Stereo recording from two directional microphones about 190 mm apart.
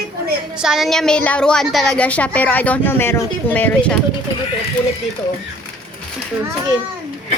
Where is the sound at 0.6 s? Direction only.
Centre (ahead or behind).